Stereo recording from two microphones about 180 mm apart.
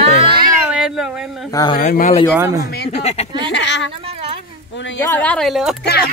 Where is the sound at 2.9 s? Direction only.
35° left (ahead or behind).